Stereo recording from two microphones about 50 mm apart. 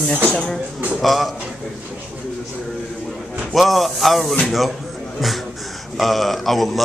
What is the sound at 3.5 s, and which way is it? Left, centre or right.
A man's voice, centre.